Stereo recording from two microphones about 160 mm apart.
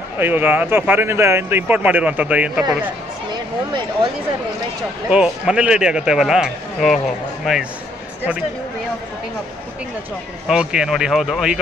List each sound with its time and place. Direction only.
0.2 s speech: 10° right (ahead or behind)
5.1 s speech: 5° right (ahead or behind)
10.5 s speech: 5° right (ahead or behind)